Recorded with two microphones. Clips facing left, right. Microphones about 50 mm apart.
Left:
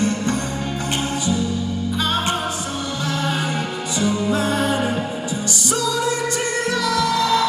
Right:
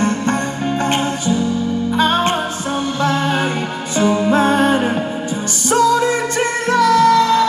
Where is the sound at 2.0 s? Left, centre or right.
Right.